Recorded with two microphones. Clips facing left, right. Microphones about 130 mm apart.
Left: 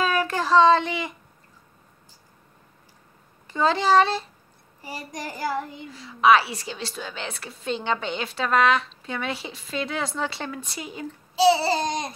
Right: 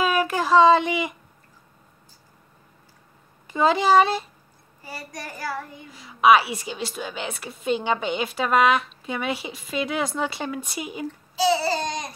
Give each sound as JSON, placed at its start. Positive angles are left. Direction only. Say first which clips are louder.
{"t": 0.0, "sound": "child singing", "louder": "right 2 dB", "side_deg": -10}
{"t": 3.4, "sound": "a woman's voice", "louder": "right 2 dB", "side_deg": -10}
{"t": 4.8, "sound": "a child's voice", "louder": "left 2 dB", "side_deg": 20}
{"t": 5.9, "sound": "a woman's voice", "louder": "right 1 dB", "side_deg": -15}
{"t": 11.5, "sound": "a child's voice", "louder": "even", "side_deg": 25}